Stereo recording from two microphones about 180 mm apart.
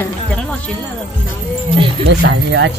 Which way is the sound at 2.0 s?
75° right (ahead or behind).